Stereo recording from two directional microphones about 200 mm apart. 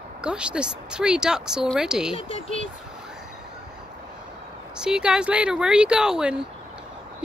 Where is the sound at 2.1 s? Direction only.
30° left (ahead or behind).